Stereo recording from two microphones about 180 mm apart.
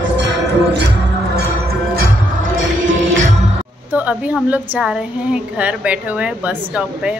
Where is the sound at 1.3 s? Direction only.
60° right (ahead or behind).